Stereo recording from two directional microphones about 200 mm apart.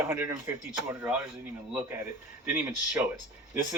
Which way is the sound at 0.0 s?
15° right (ahead or behind).